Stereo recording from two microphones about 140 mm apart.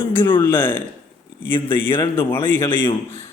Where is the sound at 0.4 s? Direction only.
15° left (ahead or behind).